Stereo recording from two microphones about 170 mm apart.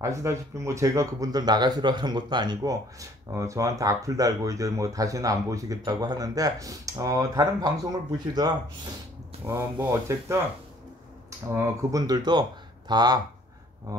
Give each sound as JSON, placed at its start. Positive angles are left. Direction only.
{"t": 0.0, "sound": "speech", "side_deg": -15}
{"t": 11.4, "sound": "speech", "side_deg": -15}